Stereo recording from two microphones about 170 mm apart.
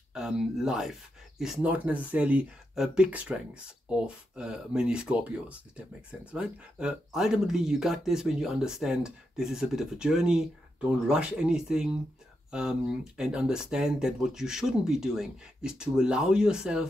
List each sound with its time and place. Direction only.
0.1 s speech: 5° right (ahead or behind)
6.3 s speech: 5° right (ahead or behind)